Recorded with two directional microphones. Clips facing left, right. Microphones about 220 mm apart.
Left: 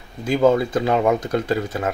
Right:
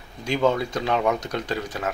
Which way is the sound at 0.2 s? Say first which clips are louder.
Left 5 dB; 5° left (ahead or behind).